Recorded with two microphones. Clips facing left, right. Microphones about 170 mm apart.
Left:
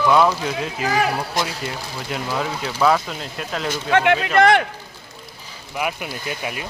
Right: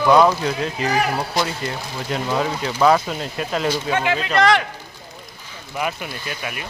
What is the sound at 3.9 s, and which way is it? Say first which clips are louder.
Speech: left 7 dB; 65° left (ahead or behind).